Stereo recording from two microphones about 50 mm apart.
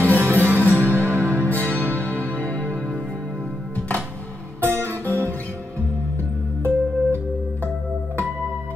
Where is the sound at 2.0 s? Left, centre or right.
Left.